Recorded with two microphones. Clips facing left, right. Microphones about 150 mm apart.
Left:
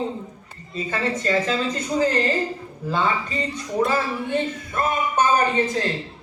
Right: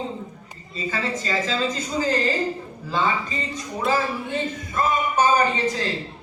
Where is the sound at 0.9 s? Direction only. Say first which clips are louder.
Left 3 dB; 60° left (ahead or behind).